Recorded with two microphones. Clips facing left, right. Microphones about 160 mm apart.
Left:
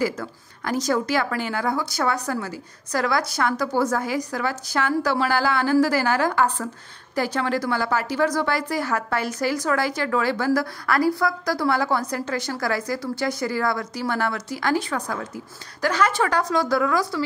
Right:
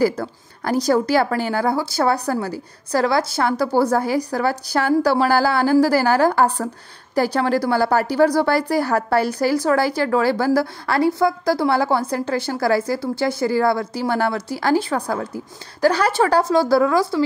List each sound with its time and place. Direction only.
0.0 s a woman's voice: 35° right (ahead or behind)